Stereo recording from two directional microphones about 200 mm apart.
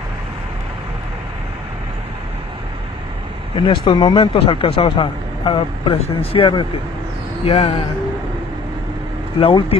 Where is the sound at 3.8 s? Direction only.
25° left (ahead or behind).